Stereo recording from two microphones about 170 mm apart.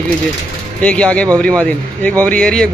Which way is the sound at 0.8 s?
5° left (ahead or behind).